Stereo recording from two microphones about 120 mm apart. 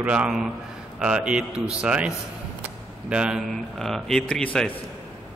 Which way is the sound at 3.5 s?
5° left (ahead or behind).